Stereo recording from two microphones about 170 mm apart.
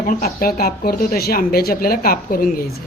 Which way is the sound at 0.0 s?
55° left (ahead or behind).